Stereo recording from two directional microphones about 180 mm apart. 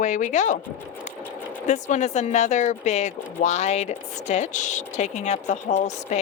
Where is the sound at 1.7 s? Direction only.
40° left (ahead or behind).